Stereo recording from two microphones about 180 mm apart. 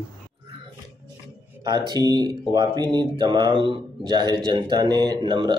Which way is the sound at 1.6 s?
25° right (ahead or behind).